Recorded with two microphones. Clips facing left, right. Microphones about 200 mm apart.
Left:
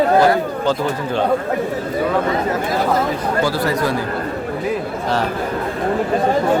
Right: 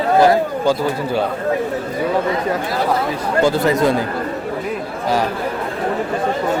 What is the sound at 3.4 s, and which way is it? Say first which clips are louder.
Speech: right 6 dB; 20° right (ahead or behind).